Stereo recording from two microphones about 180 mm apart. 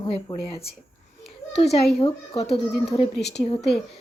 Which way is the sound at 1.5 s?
35° left (ahead or behind).